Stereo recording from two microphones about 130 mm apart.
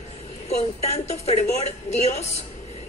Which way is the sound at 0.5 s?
55° left (ahead or behind).